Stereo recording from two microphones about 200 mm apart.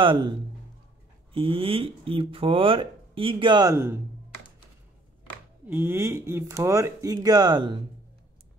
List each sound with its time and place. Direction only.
0.0 s speech: 25° right (ahead or behind)
1.3 s speech: 25° right (ahead or behind)
5.7 s speech: 10° right (ahead or behind)